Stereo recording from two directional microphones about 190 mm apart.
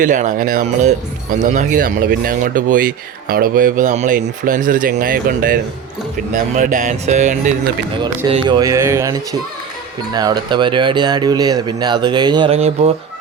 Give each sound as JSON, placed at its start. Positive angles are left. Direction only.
{"t": 0.0, "sound": "speech", "side_deg": -40}
{"t": 8.0, "sound": "speech", "side_deg": -20}
{"t": 10.2, "sound": "speech", "side_deg": -20}